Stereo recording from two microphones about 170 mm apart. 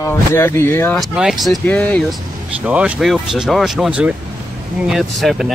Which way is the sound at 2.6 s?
10° right (ahead or behind).